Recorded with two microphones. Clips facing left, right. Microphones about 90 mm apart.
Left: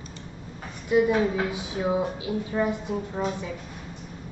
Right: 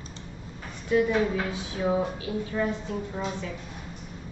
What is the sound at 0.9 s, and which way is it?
A woman's voice, 15° left (ahead or behind).